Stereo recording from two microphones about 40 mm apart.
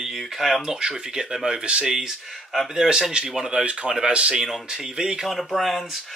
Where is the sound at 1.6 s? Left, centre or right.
Right.